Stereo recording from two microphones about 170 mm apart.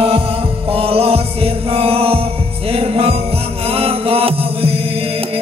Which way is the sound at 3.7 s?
35° right (ahead or behind).